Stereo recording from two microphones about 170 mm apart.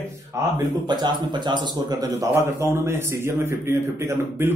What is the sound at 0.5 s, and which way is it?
Speech, 25° right (ahead or behind).